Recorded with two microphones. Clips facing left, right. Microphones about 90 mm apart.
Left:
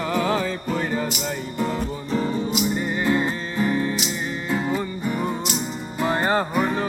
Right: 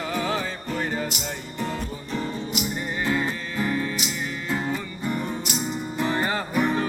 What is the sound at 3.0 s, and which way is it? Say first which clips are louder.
Music: left 2 dB; 30° left (ahead or behind).